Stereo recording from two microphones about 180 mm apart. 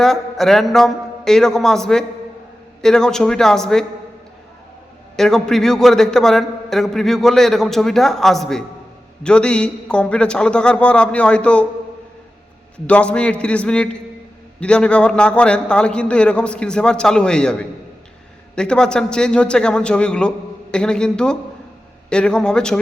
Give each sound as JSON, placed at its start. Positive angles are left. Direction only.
{"t": 0.0, "sound": "a man's voice", "side_deg": 0}
{"t": 5.1, "sound": "a man's voice", "side_deg": 0}
{"t": 12.9, "sound": "a man's voice", "side_deg": 5}